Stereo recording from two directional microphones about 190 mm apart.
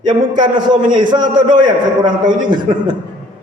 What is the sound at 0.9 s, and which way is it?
A man's voice, 25° right (ahead or behind).